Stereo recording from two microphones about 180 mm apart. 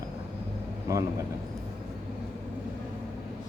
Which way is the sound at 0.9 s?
20° right (ahead or behind).